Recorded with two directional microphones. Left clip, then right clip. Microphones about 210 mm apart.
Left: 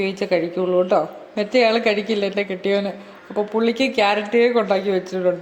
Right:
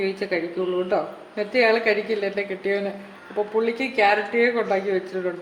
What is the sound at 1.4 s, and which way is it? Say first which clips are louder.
Speech: left 3 dB; 35° left (ahead or behind).